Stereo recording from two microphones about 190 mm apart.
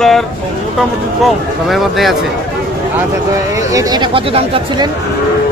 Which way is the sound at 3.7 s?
25° right (ahead or behind).